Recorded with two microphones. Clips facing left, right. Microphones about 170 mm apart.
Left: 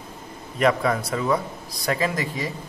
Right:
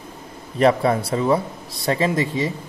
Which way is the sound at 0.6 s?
30° right (ahead or behind).